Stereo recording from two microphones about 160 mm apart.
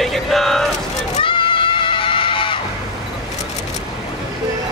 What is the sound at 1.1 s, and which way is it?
Screaming, 35° left (ahead or behind).